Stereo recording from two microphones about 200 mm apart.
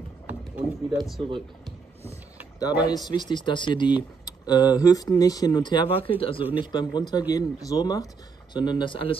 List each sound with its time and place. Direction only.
0.3 s speech: 5° right (ahead or behind)
3.1 s speech: 20° left (ahead or behind)